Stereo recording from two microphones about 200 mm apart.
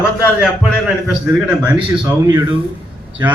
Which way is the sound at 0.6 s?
5° right (ahead or behind).